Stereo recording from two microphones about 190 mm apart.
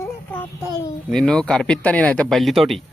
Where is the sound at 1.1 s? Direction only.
5° left (ahead or behind).